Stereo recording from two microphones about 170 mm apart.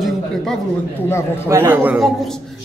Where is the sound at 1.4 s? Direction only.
15° right (ahead or behind).